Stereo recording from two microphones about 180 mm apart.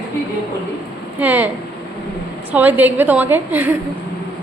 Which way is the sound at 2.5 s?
10° right (ahead or behind).